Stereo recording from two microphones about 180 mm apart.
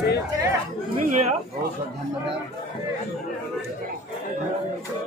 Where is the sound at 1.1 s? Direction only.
40° right (ahead or behind).